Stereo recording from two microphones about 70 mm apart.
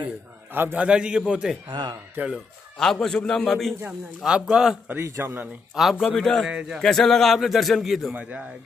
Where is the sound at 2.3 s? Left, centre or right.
Centre.